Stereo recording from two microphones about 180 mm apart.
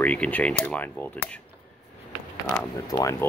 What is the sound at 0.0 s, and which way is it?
Speech, 10° left (ahead or behind).